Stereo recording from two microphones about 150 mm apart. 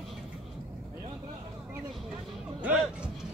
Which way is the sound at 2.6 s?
10° right (ahead or behind).